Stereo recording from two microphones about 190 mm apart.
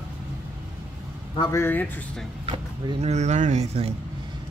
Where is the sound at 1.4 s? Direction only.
15° left (ahead or behind).